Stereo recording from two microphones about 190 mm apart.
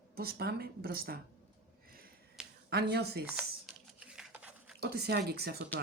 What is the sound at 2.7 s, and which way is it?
Speech, 60° right (ahead or behind).